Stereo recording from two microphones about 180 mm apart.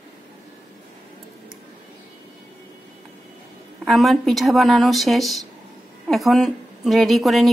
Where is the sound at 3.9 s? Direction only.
Centre (ahead or behind).